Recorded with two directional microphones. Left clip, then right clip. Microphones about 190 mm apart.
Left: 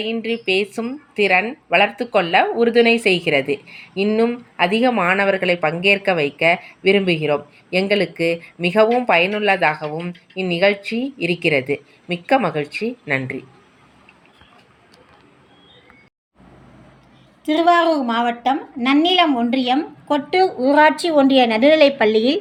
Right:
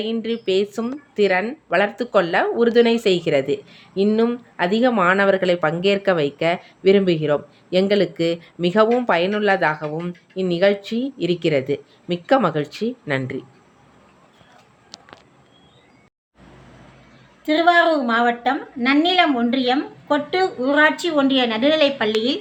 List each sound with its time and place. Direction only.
0.0 s speech: 20° right (ahead or behind)
17.4 s a woman's voice: 5° left (ahead or behind); by 22.4 s 20° left (ahead or behind)